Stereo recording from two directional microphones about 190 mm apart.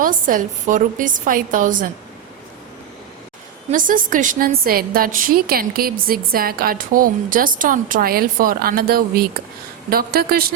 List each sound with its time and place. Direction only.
0.0 s a woman's voice: 45° right (ahead or behind)
3.7 s a woman's voice: 45° right (ahead or behind)